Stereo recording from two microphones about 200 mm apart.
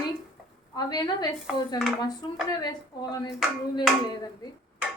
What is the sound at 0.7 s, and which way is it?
Speech, 20° left (ahead or behind).